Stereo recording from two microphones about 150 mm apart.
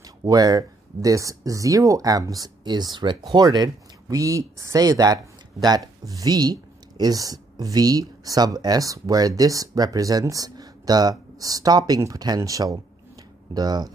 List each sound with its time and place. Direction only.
0.0 s speech: 25° right (ahead or behind)